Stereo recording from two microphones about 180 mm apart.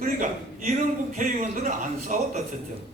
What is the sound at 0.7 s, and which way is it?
A man's voice, 40° right (ahead or behind).